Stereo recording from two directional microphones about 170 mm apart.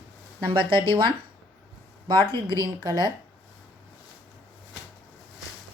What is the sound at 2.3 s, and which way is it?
Speech, 20° left (ahead or behind).